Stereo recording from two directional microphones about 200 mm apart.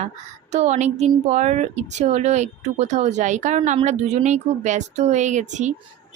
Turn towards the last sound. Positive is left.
turn(degrees=-35)  # may be behind; listen again after turning